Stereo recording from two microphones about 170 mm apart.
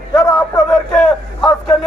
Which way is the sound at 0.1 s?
15° left (ahead or behind).